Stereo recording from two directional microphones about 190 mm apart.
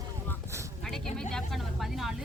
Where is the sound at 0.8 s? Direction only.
5° left (ahead or behind).